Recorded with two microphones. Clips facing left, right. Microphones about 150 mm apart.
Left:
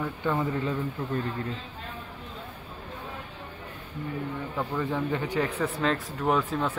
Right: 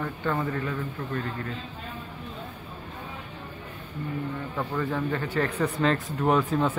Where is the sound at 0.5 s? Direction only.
15° left (ahead or behind).